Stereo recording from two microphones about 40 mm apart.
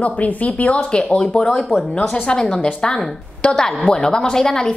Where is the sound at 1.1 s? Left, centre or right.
Left.